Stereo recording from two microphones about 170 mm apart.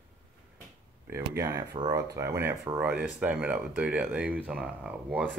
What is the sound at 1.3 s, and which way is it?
Speech, 20° right (ahead or behind).